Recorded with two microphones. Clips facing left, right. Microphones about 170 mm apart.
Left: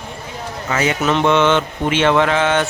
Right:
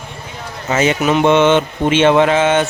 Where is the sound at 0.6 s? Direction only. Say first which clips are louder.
Right 4 dB; 25° right (ahead or behind).